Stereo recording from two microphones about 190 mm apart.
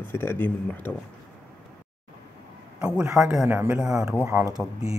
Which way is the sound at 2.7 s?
5° right (ahead or behind).